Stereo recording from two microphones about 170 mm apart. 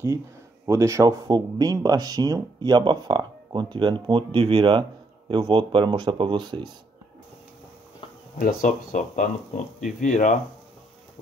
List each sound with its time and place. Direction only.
0.7 s speech: 15° right (ahead or behind)
8.4 s speech: 55° left (ahead or behind)